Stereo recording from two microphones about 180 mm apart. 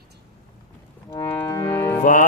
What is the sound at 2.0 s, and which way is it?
Music, 45° left (ahead or behind).